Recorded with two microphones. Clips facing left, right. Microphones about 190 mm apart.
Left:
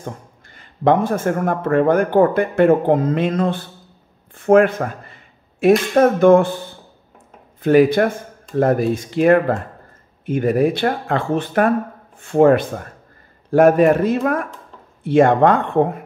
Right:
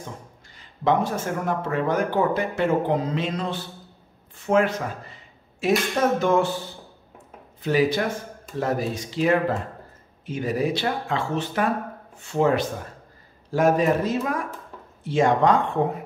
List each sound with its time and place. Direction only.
0.0 s speech: 55° left (ahead or behind)
4.4 s a sound: 55° left (ahead or behind)
5.9 s speech: 55° left (ahead or behind)
7.6 s speech: 55° left (ahead or behind)